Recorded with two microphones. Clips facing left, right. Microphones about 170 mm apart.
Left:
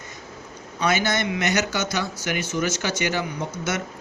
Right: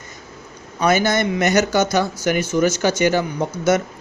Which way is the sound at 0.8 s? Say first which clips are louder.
Right 6 dB; 45° right (ahead or behind).